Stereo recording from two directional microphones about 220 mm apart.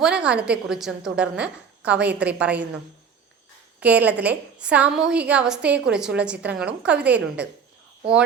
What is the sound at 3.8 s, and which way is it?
A woman's voice, 5° right (ahead or behind).